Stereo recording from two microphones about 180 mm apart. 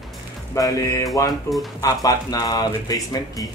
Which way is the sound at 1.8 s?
20° left (ahead or behind).